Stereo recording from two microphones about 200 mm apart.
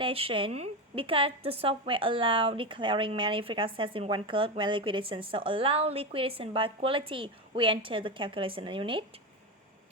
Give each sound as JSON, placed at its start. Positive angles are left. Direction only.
{"t": 0.0, "sound": "a woman's voice", "side_deg": -30}